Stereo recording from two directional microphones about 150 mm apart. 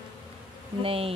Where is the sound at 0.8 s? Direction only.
40° right (ahead or behind).